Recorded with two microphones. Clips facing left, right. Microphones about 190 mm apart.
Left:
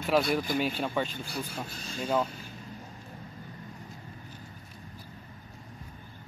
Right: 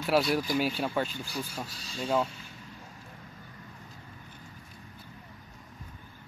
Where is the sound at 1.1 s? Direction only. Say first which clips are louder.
Even; 55° left (ahead or behind).